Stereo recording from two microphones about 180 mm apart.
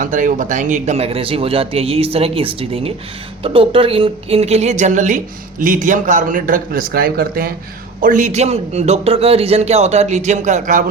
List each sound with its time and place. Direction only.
0.0 s a woman's voice: 45° right (ahead or behind)
8.0 s speech: 45° right (ahead or behind)